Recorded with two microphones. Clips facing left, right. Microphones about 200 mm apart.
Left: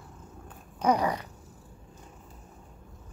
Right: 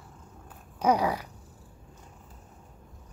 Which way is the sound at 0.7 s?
10° right (ahead or behind).